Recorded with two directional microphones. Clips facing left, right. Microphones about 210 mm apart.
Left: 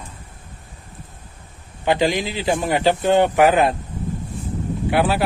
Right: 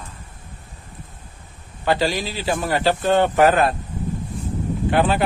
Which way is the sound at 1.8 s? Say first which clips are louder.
Left 2 dB; 15° left (ahead or behind).